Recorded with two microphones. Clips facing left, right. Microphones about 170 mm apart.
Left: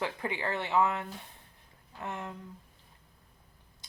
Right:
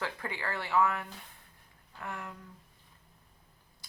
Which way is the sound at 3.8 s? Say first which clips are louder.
Even; 20° left (ahead or behind).